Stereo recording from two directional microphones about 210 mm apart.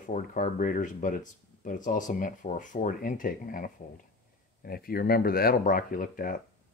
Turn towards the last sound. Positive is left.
turn(degrees=40)  # may be behind; listen again after turning